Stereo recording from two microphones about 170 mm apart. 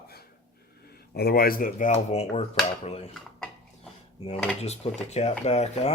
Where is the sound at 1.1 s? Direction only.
65° left (ahead or behind); by 3.1 s 35° left (ahead or behind).